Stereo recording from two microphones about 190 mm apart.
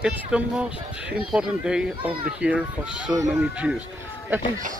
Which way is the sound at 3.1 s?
15° right (ahead or behind).